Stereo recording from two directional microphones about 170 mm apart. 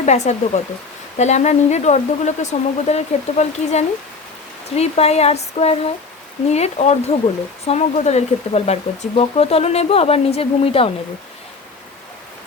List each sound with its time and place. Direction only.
0.0 s speech: 40° left (ahead or behind)